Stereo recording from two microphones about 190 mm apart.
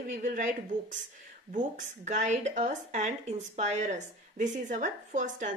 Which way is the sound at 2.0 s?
40° right (ahead or behind).